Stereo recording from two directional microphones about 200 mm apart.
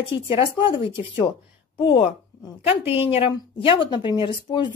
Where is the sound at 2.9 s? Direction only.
30° left (ahead or behind).